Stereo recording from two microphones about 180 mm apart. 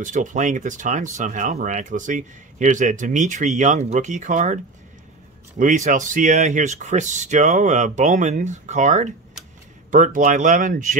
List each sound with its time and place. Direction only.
0.0 s speech: 45° right (ahead or behind)
5.6 s speech: 45° right (ahead or behind)